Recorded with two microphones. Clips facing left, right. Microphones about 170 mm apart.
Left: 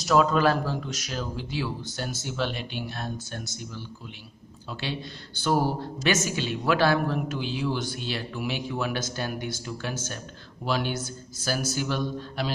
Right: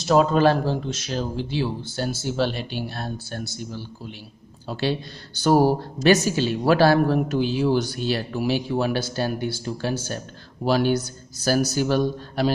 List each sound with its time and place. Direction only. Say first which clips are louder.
0.0 s a woman's voice: right 4 dB; 30° right (ahead or behind)